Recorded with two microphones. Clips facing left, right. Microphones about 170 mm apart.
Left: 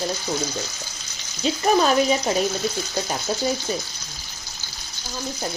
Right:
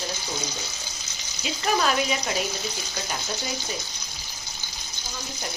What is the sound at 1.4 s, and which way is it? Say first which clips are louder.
Speech: left 6 dB; 35° left (ahead or behind).